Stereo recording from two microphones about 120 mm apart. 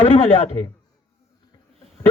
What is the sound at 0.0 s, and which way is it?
Speech, 55° left (ahead or behind).